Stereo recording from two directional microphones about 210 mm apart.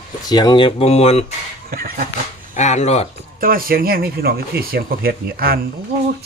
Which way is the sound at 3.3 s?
45° right (ahead or behind).